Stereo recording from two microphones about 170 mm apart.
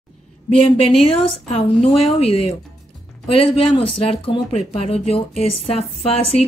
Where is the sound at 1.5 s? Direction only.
40° left (ahead or behind).